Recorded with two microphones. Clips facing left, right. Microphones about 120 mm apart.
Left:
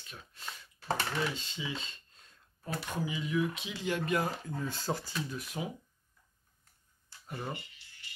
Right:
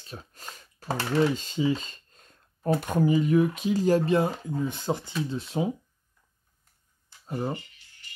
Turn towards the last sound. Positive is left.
turn(degrees=-30)  # may be behind; listen again after turning